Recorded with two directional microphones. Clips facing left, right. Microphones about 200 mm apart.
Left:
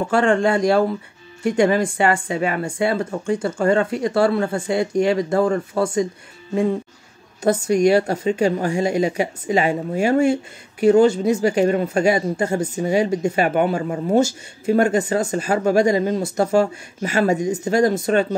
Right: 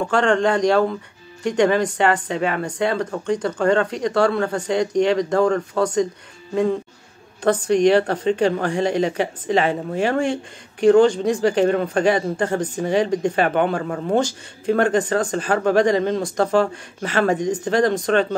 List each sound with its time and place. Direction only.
0.0 s a woman's voice: 10° left (ahead or behind)